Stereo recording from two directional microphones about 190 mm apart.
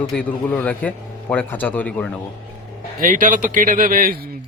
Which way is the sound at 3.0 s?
45° right (ahead or behind).